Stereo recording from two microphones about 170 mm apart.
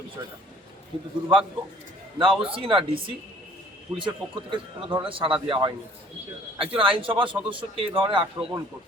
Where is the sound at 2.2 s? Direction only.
30° right (ahead or behind).